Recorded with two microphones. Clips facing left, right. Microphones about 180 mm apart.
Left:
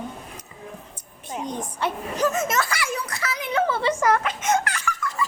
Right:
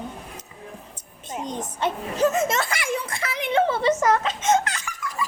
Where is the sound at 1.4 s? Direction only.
20° right (ahead or behind).